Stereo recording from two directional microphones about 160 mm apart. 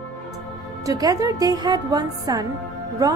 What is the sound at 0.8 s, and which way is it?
Speech, 20° right (ahead or behind).